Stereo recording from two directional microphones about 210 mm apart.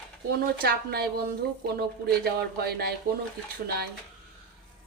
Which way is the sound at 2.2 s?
50° right (ahead or behind).